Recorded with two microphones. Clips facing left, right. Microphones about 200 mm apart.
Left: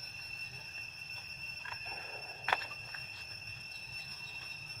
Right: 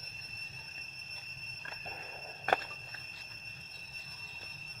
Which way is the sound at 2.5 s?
45° right (ahead or behind).